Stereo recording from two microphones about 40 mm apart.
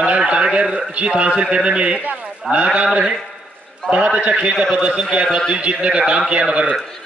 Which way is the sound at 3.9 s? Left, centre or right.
Right.